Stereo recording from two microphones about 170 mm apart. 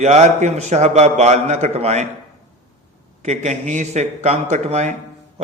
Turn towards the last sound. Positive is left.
turn(degrees=-40)  # may be behind; listen again after turning